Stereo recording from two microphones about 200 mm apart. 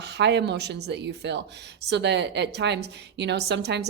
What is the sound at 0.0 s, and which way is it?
A woman's voice, 60° right (ahead or behind).